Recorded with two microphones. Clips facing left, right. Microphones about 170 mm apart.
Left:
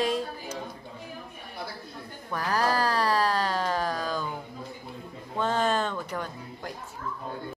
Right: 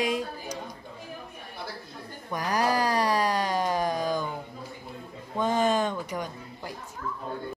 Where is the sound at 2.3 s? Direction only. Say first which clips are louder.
Right 1 dB; 15° right (ahead or behind).